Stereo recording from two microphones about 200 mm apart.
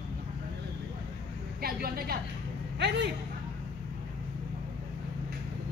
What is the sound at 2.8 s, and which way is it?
Speech, 55° right (ahead or behind).